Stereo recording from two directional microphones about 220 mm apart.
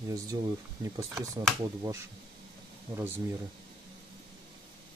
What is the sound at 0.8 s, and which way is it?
Speech, 15° right (ahead or behind).